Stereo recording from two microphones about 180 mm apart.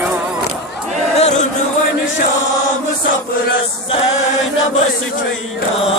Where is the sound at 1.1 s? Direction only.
35° left (ahead or behind).